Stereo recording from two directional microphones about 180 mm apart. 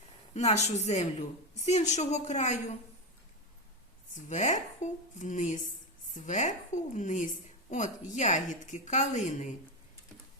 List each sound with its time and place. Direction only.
0.3 s a woman's voice: 40° left (ahead or behind)
4.1 s a woman's voice: 40° left (ahead or behind)